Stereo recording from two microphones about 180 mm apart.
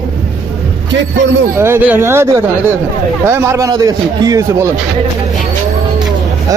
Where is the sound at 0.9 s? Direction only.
75° right (ahead or behind).